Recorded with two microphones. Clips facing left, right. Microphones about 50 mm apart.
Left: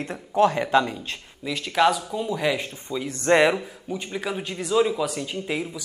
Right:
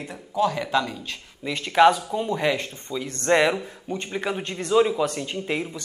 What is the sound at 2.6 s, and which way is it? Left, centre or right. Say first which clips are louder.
A man's voice: left 1 dB; centre.